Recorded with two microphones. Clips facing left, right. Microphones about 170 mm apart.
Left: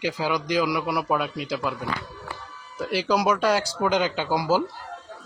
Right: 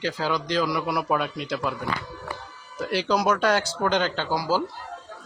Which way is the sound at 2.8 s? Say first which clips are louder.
Even; centre (ahead or behind).